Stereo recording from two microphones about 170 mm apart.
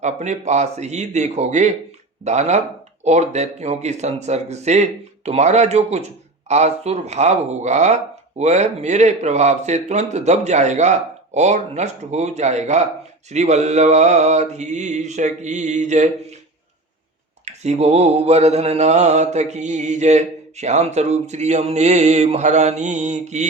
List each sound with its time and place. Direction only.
0.0 s mantra: 40° right (ahead or behind)
17.4 s mantra: 40° right (ahead or behind)